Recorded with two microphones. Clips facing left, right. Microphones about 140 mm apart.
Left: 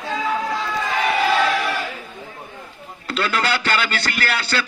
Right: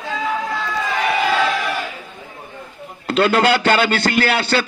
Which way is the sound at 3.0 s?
45° right (ahead or behind).